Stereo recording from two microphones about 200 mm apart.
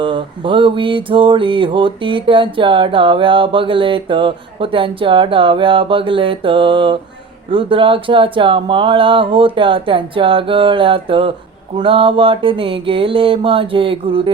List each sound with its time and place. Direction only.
0.0 s mantra: 25° right (ahead or behind)